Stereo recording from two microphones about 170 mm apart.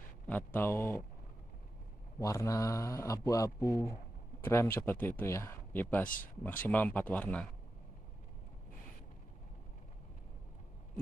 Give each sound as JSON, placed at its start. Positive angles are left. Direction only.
{"t": 0.3, "sound": "speech", "side_deg": 10}
{"t": 2.1, "sound": "speech", "side_deg": 20}
{"t": 6.0, "sound": "speech", "side_deg": 50}
{"t": 6.4, "sound": "speech", "side_deg": 10}